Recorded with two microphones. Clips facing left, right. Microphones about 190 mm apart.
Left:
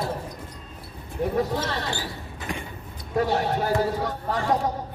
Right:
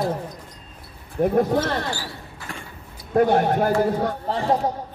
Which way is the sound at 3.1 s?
55° right (ahead or behind).